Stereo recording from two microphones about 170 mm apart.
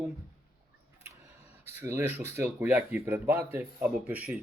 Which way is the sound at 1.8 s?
15° right (ahead or behind).